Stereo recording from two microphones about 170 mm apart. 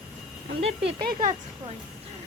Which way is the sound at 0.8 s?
90° right.